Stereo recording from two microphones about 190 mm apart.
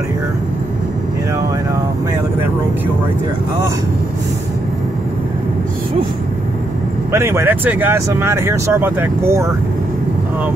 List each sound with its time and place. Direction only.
7.1 s speech: 15° right (ahead or behind)